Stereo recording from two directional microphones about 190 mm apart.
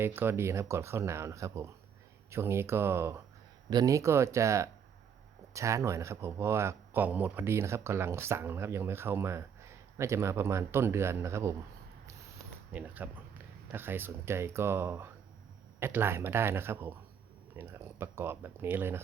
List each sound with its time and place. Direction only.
0.0 s speech: 10° right (ahead or behind)
12.7 s speech: 10° right (ahead or behind)